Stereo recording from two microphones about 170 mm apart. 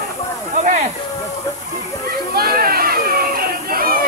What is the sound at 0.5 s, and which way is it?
Speech, 45° right (ahead or behind).